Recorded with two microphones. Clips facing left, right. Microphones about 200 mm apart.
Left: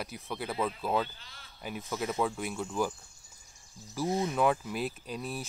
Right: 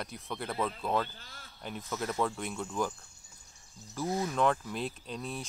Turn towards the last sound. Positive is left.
turn(degrees=5)  # may be behind; listen again after turning